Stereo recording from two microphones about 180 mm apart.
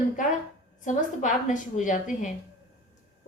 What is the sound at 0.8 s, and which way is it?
A woman's voice, 45° left (ahead or behind).